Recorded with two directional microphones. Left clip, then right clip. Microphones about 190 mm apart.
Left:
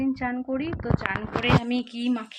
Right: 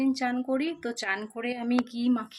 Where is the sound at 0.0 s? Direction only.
25° right (ahead or behind).